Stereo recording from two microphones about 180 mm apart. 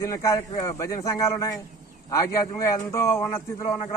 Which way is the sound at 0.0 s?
15° left (ahead or behind).